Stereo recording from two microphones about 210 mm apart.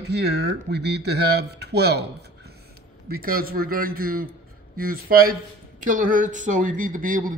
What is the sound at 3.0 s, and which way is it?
Speech, 45° right (ahead or behind).